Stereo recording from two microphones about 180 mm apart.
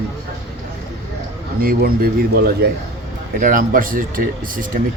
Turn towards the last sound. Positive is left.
turn(degrees=-50)  # may be behind; listen again after turning